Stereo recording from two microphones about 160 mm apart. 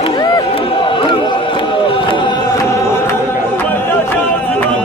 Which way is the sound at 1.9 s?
30° left (ahead or behind).